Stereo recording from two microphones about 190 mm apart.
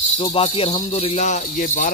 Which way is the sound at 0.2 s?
30° left (ahead or behind).